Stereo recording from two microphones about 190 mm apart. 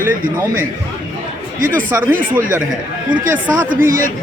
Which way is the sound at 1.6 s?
45° right (ahead or behind).